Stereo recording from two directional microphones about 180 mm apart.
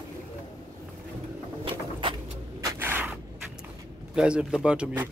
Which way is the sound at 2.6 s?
15° right (ahead or behind).